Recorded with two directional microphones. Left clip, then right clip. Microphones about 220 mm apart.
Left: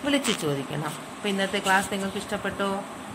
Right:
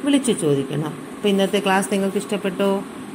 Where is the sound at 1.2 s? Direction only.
5° right (ahead or behind).